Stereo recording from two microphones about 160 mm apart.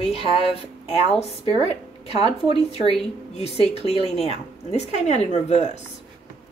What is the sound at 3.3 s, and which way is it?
A woman's voice, 40° left (ahead or behind).